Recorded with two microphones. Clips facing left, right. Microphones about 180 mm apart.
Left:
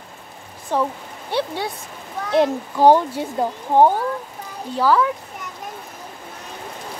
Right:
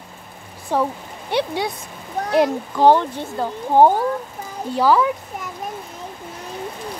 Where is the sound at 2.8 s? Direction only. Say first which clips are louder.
Left 1 dB; 10° left (ahead or behind).